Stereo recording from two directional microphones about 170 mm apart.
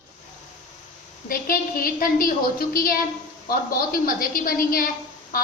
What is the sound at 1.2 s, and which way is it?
A woman's voice, 60° left (ahead or behind).